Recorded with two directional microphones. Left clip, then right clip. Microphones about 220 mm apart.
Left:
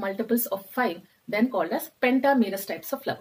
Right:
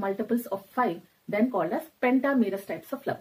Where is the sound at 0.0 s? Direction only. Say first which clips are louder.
Left 2 dB; 15° left (ahead or behind).